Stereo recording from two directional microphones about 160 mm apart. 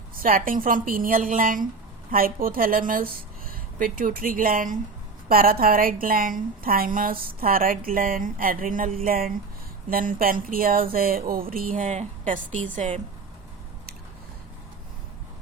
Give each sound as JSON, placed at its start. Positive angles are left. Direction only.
{"t": 0.1, "sound": "a woman's voice", "side_deg": -60}